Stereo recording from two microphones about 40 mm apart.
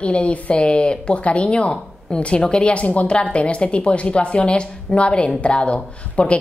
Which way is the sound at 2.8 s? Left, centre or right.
Left.